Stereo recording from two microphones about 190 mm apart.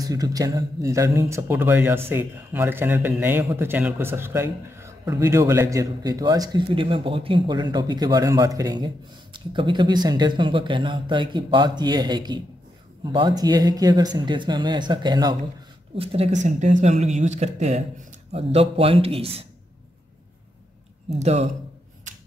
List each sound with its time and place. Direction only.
0.0 s a man's voice: 20° right (ahead or behind)
21.2 s speech: 35° right (ahead or behind)